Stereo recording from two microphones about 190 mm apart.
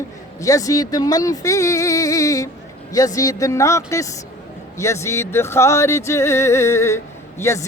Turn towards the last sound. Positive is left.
turn(degrees=15)  # may be behind; listen again after turning